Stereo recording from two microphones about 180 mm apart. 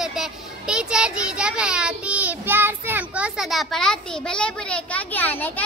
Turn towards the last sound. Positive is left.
turn(degrees=10)  # may be behind; listen again after turning